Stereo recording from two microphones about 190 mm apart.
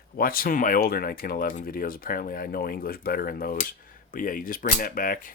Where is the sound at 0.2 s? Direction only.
50° left (ahead or behind).